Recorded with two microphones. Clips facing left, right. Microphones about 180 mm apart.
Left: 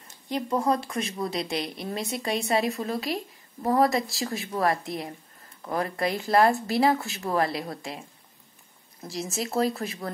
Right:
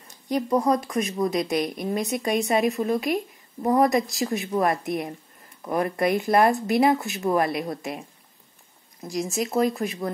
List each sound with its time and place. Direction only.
0.3 s a woman's voice: 15° right (ahead or behind)
0.7 s speech: 30° left (ahead or behind)
1.8 s a woman's voice: 20° right (ahead or behind)
9.0 s a woman's voice: 15° right (ahead or behind)